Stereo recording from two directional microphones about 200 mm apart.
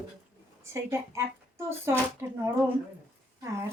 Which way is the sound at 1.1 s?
15° right (ahead or behind).